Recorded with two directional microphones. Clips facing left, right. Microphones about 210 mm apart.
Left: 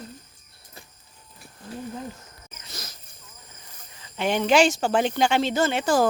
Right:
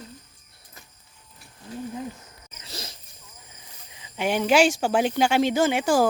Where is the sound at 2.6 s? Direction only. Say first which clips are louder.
Right 3 dB; 30° right (ahead or behind).